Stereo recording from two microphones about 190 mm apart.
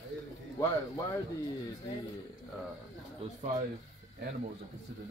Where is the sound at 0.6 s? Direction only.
15° left (ahead or behind).